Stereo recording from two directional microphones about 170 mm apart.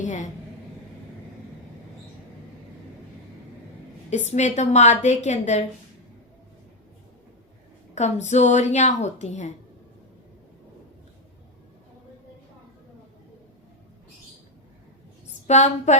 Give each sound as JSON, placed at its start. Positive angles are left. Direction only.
{"t": 0.0, "sound": "a woman's voice", "side_deg": 45}
{"t": 4.1, "sound": "a woman's voice", "side_deg": 40}
{"t": 7.9, "sound": "a woman's voice", "side_deg": 40}
{"t": 15.4, "sound": "a woman's voice", "side_deg": 40}